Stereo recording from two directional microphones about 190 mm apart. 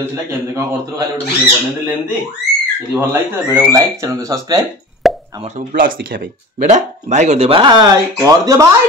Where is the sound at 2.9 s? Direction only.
10° right (ahead or behind).